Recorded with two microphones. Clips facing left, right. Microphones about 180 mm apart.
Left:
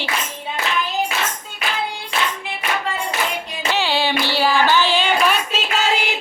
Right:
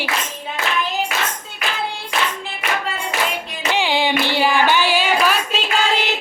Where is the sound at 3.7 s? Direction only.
15° right (ahead or behind).